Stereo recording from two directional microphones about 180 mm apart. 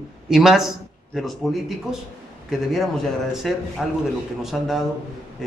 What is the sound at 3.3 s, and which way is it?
Speech, centre (ahead or behind).